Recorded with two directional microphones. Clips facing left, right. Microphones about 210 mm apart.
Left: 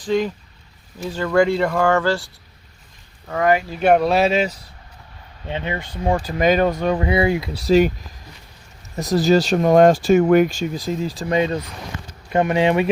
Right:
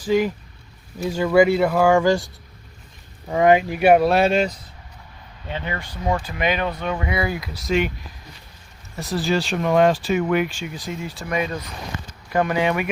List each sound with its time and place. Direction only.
0.0 s speech: 10° right (ahead or behind)
5.5 s speech: 25° left (ahead or behind)
9.0 s speech: 40° left (ahead or behind)